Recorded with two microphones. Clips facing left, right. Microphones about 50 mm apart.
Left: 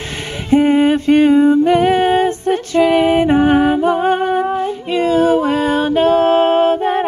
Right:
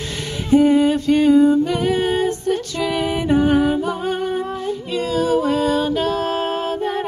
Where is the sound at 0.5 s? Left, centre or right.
Left.